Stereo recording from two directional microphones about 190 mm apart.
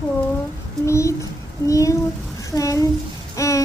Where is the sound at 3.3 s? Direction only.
15° left (ahead or behind).